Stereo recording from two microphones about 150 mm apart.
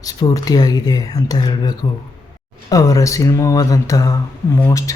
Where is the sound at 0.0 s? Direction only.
25° left (ahead or behind).